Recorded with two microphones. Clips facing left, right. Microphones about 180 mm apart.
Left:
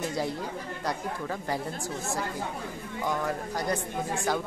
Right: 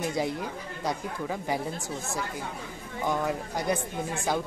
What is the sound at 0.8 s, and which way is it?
Speech, 10° right (ahead or behind).